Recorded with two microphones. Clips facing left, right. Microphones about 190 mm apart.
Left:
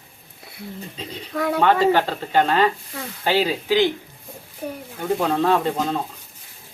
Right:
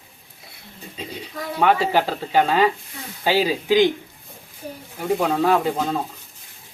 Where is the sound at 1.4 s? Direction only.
65° left (ahead or behind).